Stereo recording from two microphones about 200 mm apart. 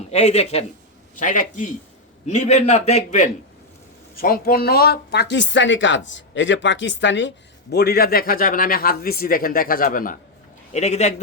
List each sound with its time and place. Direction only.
0.1 s a man's voice: 30° left (ahead or behind)
4.1 s speech: 45° left (ahead or behind)